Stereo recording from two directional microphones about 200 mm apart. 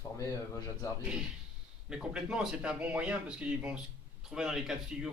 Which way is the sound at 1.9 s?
5° right (ahead or behind).